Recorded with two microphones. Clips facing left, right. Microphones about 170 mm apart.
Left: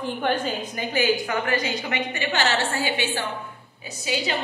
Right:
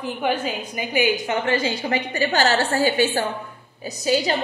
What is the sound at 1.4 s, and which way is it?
A woman's voice, 30° right (ahead or behind).